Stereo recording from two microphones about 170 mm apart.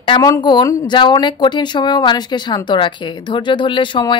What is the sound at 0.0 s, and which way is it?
Speech, 25° left (ahead or behind).